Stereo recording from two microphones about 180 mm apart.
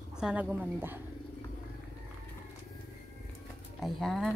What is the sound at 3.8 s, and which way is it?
Speech, centre (ahead or behind).